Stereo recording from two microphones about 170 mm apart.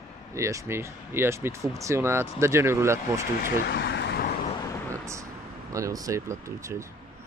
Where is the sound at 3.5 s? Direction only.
80° left.